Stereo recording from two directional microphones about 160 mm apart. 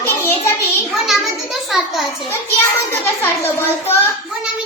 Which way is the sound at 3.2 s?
15° left (ahead or behind).